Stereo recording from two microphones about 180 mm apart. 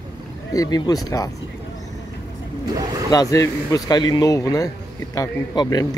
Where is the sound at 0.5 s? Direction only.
20° left (ahead or behind).